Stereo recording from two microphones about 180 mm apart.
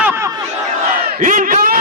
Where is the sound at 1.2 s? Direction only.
45° right (ahead or behind).